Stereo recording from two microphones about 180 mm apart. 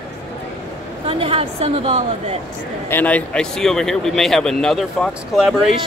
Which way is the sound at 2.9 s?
10° left (ahead or behind).